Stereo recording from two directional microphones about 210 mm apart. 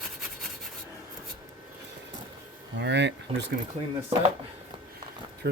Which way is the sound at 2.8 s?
55° right (ahead or behind).